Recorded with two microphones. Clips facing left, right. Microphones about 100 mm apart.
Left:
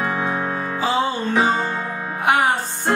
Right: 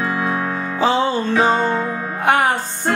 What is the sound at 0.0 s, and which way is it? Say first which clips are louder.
Music: right 2 dB; 25° left (ahead or behind).